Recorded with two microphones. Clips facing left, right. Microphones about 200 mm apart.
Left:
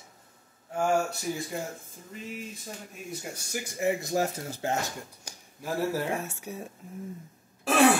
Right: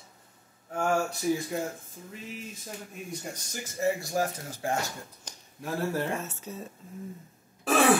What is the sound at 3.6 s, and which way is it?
Speech, 20° left (ahead or behind).